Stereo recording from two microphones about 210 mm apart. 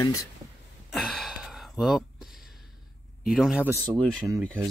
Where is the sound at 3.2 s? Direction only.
Centre (ahead or behind).